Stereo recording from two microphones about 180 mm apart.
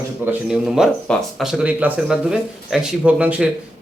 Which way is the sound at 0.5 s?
Centre (ahead or behind).